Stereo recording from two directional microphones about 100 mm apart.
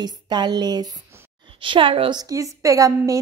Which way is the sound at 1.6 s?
55° right (ahead or behind).